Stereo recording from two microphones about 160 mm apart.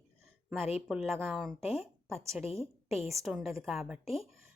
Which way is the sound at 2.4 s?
40° left (ahead or behind).